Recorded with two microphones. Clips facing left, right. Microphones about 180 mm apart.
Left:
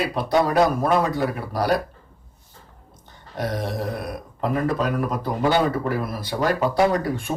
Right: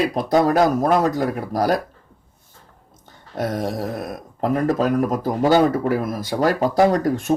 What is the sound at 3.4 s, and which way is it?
Speech, 45° right (ahead or behind).